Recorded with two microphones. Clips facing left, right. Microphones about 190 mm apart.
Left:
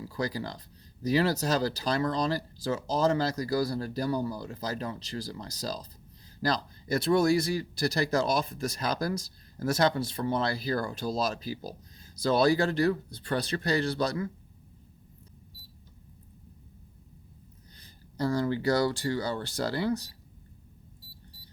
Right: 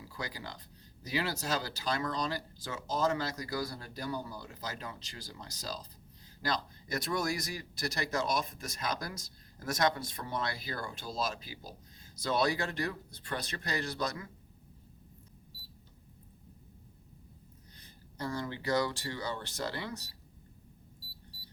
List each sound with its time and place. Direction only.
0.1 s a man's voice: 35° left (ahead or behind)
17.7 s speech: 35° left (ahead or behind)